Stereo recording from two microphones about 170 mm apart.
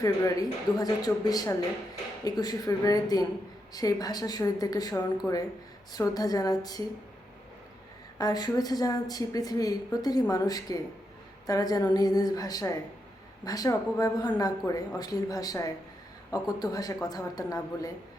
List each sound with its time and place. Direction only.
0.0 s a woman's voice: 20° left (ahead or behind)
8.2 s a woman's voice: 25° left (ahead or behind)